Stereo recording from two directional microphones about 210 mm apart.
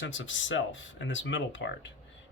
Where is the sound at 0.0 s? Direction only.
60° left (ahead or behind).